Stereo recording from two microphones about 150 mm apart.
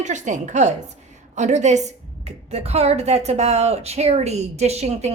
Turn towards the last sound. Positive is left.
turn(degrees=-45)  # may be behind; listen again after turning